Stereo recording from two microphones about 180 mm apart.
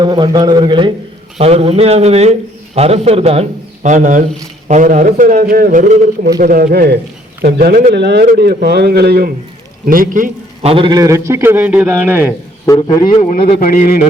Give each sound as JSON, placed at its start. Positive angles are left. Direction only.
{"t": 0.0, "sound": "a man's voice", "side_deg": -25}
{"t": 7.9, "sound": "a man's voice", "side_deg": -70}
{"t": 9.8, "sound": "a man's voice", "side_deg": -50}
{"t": 10.7, "sound": "a man's voice", "side_deg": -25}
{"t": 12.6, "sound": "a man's voice", "side_deg": 20}
{"t": 13.2, "sound": "speech", "side_deg": 45}